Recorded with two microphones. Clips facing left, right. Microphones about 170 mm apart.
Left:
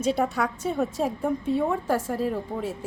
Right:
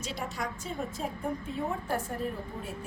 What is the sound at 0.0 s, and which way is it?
A woman's voice, 60° left (ahead or behind).